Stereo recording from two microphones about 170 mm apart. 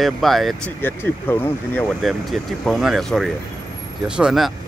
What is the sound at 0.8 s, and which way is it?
Speech, 10° left (ahead or behind).